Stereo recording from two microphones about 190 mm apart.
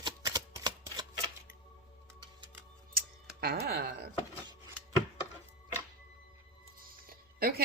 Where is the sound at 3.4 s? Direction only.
55° right (ahead or behind).